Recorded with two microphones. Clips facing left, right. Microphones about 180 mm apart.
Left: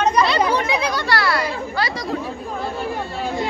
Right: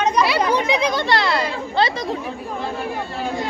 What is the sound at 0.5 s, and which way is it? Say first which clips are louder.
Speech: right 2 dB; 15° right (ahead or behind).